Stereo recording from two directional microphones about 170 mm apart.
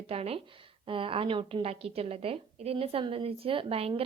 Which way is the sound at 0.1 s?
35° right (ahead or behind).